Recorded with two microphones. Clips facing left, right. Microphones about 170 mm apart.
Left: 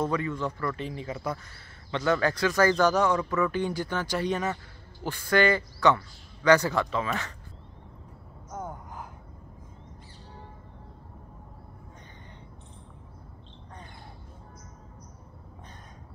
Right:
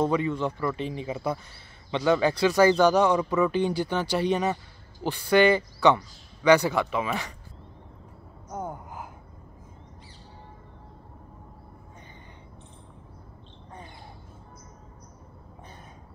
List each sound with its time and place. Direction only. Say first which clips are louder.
0.0 s speech: right 4 dB; 20° right (ahead or behind)
2.9 s a man's voice: right 3 dB; 15° right (ahead or behind)
8.5 s gasp: right 3 dB; 10° right (ahead or behind)